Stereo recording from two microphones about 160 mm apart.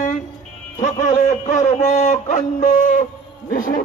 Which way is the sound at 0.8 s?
50° left (ahead or behind).